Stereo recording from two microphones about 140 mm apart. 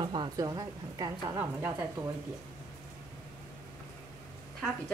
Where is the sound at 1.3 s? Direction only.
15° right (ahead or behind).